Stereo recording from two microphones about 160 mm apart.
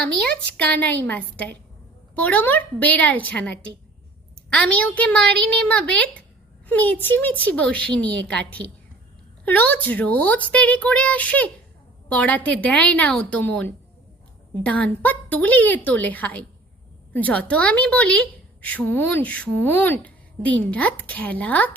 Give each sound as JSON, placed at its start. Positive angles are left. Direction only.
{"t": 0.5, "sound": "a woman's voice", "side_deg": 10}
{"t": 9.4, "sound": "a woman's voice", "side_deg": 10}